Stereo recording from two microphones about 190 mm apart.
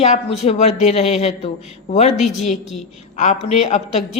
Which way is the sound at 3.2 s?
40° left (ahead or behind).